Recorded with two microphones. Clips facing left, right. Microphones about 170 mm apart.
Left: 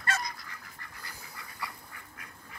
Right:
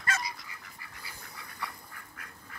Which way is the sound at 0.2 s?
5° right (ahead or behind).